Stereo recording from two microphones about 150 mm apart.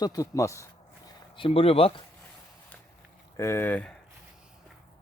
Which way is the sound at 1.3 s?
35° left (ahead or behind).